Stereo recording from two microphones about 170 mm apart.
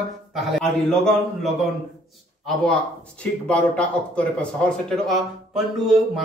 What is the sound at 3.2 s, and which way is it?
A man's voice, 5° left (ahead or behind).